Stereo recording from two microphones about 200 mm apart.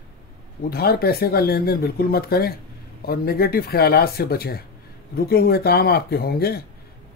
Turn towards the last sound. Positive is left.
turn(degrees=50)  # may be behind; listen again after turning